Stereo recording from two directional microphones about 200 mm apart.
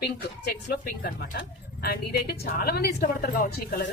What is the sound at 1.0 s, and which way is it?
A woman's voice, 50° left (ahead or behind).